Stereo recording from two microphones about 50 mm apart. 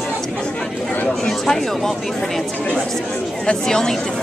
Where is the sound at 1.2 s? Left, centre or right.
Centre.